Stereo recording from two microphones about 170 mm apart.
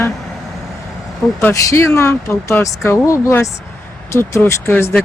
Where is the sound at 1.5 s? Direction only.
20° left (ahead or behind).